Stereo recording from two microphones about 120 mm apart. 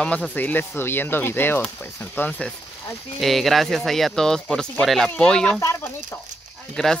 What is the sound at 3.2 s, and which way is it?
Speech, centre (ahead or behind).